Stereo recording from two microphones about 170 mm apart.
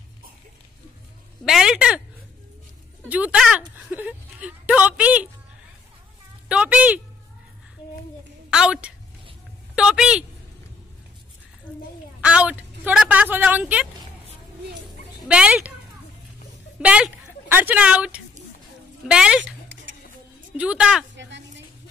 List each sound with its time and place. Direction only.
1.4 s speech: centre (ahead or behind)
3.1 s speech: 5° right (ahead or behind)
6.5 s speech: 5° right (ahead or behind)
8.5 s a woman's voice: 5° right (ahead or behind)
12.2 s speech: 5° right (ahead or behind)
15.2 s speech: 5° right (ahead or behind)
16.8 s a woman's voice: 5° right (ahead or behind)
19.4 s a sound: 90° right
20.5 s speech: 5° right (ahead or behind)
21.2 s a sound: 90° right